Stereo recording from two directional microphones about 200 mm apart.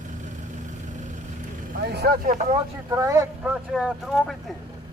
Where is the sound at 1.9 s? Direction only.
50° right (ahead or behind).